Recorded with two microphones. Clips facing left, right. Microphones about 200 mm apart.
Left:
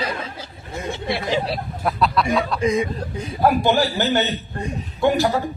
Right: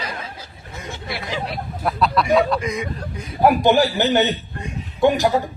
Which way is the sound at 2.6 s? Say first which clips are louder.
Left 5 dB; 30° left (ahead or behind).